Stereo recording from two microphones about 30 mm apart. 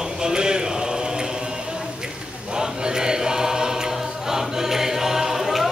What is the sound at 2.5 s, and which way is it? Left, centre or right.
Choir, right.